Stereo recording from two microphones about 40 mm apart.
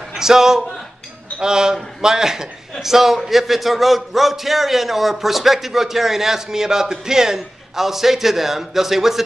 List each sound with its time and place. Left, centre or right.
0.1 s a man's voice: centre